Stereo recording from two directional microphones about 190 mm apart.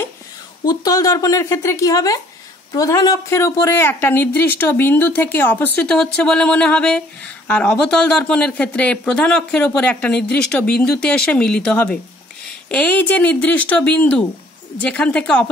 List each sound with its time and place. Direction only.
0.7 s speech: 20° left (ahead or behind)